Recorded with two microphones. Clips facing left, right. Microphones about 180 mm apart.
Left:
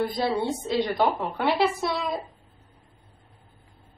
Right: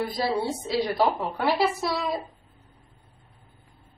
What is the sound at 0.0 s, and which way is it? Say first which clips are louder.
A woman's voice: left 1 dB; 5° right (ahead or behind).